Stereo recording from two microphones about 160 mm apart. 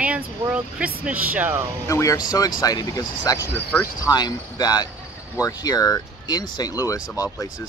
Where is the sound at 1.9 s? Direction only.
20° left (ahead or behind).